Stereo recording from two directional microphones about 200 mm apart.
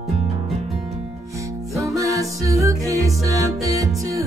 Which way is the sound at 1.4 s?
15° right (ahead or behind).